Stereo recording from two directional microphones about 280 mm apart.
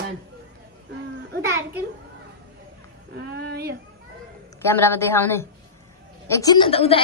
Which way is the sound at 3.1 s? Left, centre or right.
Right.